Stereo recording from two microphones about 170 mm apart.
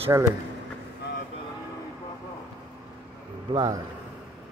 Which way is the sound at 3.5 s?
20° right (ahead or behind).